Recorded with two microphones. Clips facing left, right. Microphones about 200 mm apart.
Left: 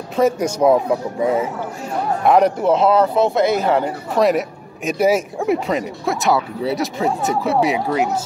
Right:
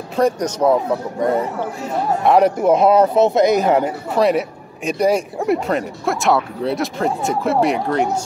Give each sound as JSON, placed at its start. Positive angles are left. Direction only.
{"t": 0.1, "sound": "a man's voice", "side_deg": 5}
{"t": 4.1, "sound": "speech", "side_deg": 0}